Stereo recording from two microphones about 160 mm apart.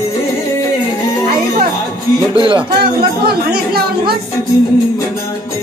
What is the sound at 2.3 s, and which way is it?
Music, 30° right (ahead or behind).